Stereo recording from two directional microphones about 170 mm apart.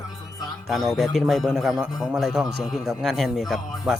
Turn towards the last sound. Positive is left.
turn(degrees=0)  # may be behind; listen again after turning